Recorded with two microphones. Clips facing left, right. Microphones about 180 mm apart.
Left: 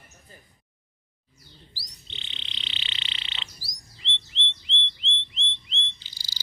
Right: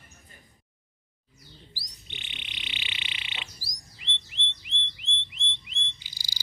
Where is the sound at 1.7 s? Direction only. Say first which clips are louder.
Right 1 dB; 15° right (ahead or behind).